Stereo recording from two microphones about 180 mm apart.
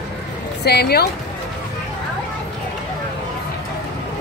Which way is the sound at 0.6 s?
65° left (ahead or behind).